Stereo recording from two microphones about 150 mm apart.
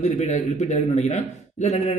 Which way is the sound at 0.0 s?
50° left (ahead or behind).